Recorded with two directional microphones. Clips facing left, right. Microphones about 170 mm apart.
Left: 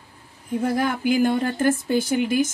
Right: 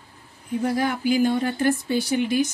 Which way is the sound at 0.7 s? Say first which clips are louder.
Left 1 dB; 50° left (ahead or behind).